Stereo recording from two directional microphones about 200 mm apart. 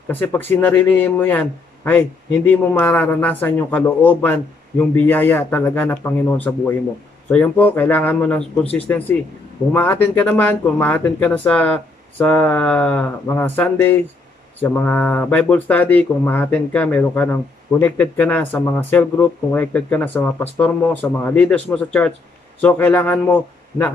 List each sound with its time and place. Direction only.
0.1 s speech: 10° left (ahead or behind)